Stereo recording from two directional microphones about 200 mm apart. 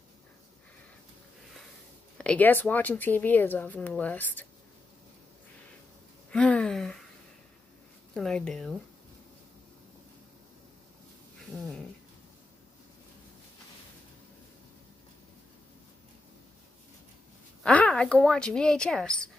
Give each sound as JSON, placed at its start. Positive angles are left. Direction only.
{"t": 2.1, "sound": "speech", "side_deg": 5}
{"t": 6.3, "sound": "speech", "side_deg": 5}
{"t": 8.1, "sound": "speech", "side_deg": 5}
{"t": 11.5, "sound": "speech", "side_deg": 0}
{"t": 17.6, "sound": "speech", "side_deg": 5}